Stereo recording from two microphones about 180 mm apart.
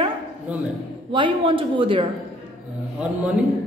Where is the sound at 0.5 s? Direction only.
10° right (ahead or behind).